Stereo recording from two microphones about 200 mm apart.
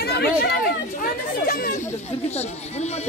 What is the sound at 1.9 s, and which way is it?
Speech, 35° left (ahead or behind).